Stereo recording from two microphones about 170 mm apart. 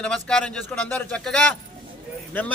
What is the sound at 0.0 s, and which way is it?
A man's voice, 5° left (ahead or behind).